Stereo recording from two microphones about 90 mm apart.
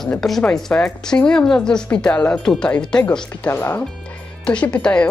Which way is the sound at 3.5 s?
25° left (ahead or behind).